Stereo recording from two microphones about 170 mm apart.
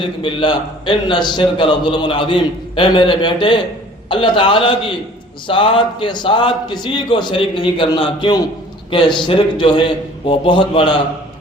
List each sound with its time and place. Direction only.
0.0 s a man's voice: 30° left (ahead or behind)